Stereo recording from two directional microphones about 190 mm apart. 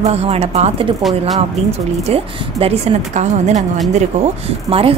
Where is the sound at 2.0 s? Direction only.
30° right (ahead or behind).